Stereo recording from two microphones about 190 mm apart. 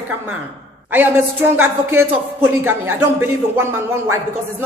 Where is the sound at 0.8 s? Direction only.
10° right (ahead or behind).